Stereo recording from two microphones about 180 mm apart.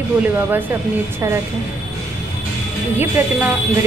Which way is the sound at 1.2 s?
15° right (ahead or behind).